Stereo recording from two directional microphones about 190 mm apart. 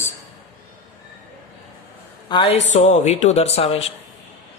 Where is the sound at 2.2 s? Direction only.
25° left (ahead or behind).